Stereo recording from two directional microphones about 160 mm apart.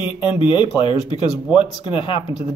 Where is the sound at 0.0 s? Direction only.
30° left (ahead or behind).